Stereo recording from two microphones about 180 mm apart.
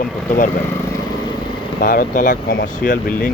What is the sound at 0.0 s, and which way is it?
Speech, 50° left (ahead or behind).